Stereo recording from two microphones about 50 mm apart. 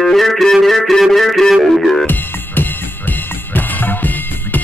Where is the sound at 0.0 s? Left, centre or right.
Centre.